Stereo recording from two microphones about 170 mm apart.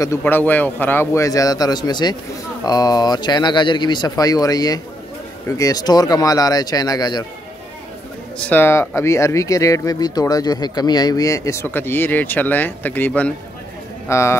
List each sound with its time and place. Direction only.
0.0 s speech: 15° left (ahead or behind)
8.4 s a man's voice: 10° left (ahead or behind)